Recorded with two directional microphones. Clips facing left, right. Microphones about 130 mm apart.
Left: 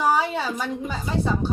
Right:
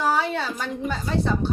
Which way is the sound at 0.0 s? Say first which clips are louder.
Left 1 dB; 10° left (ahead or behind).